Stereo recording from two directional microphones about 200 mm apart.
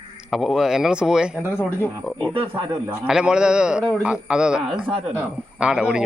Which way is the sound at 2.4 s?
25° right (ahead or behind).